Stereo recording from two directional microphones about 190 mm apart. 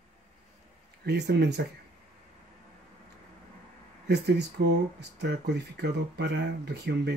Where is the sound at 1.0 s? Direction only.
60° right (ahead or behind).